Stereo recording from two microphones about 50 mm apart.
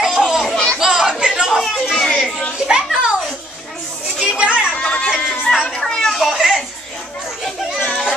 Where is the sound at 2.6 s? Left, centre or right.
Centre.